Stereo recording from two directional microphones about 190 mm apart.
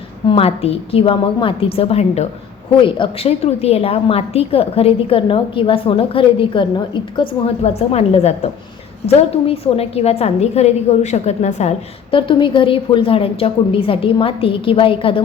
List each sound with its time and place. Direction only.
0.3 s a woman's voice: 30° left (ahead or behind)
12.1 s a woman's voice: 25° left (ahead or behind)